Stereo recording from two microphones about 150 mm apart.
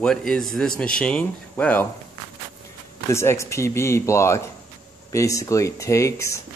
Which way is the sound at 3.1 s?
20° left (ahead or behind).